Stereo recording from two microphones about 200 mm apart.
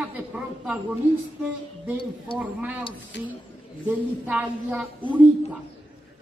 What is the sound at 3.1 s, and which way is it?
Speech, 65° left (ahead or behind).